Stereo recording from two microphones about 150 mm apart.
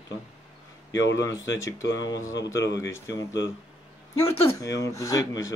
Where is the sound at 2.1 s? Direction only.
20° left (ahead or behind).